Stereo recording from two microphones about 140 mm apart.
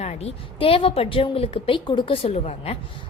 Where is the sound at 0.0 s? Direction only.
50° left (ahead or behind).